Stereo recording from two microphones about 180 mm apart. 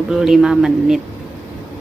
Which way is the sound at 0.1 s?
5° right (ahead or behind).